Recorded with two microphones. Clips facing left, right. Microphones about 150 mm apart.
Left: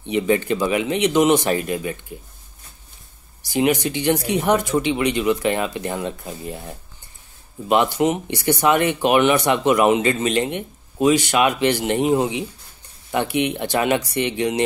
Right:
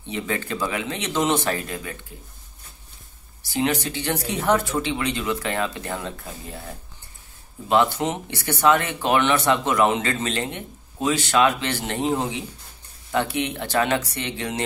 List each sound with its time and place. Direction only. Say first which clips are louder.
0.0 s speech: left 9 dB; 20° left (ahead or behind)
3.4 s speech: left 5 dB; 15° left (ahead or behind)
7.6 s speech: left 3 dB; 15° left (ahead or behind)